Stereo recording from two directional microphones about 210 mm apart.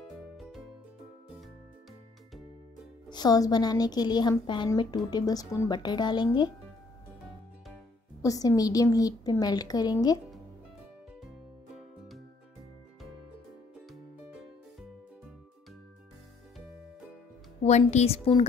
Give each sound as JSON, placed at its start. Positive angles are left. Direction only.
{"t": 0.4, "sound": "music", "side_deg": 0}
{"t": 3.1, "sound": "a woman's voice", "side_deg": 20}
{"t": 8.2, "sound": "a woman's voice", "side_deg": 15}
{"t": 11.2, "sound": "music", "side_deg": 0}
{"t": 17.6, "sound": "a woman's voice", "side_deg": 35}